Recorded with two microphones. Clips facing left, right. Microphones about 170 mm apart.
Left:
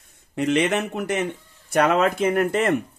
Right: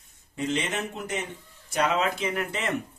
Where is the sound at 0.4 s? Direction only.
70° left (ahead or behind).